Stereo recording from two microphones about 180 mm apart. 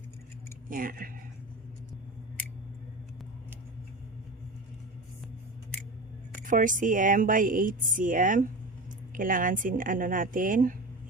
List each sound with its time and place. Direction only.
0.7 s a woman's voice: 50° right (ahead or behind)
6.4 s a woman's voice: 45° right (ahead or behind)